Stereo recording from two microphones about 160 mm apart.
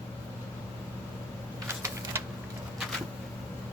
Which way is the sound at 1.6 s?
15° right (ahead or behind).